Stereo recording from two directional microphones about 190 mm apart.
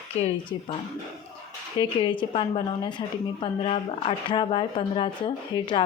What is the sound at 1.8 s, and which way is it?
Speech, 25° left (ahead or behind).